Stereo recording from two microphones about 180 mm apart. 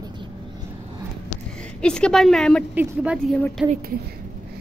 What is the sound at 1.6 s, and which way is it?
A woman's voice, 5° left (ahead or behind).